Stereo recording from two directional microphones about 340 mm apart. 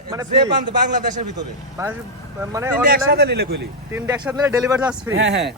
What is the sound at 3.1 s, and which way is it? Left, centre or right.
Speech, right.